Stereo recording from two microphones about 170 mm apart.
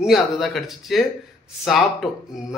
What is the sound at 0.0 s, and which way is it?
A man's voice, centre (ahead or behind).